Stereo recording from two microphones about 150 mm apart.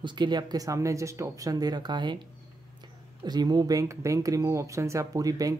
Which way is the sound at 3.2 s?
30° right (ahead or behind).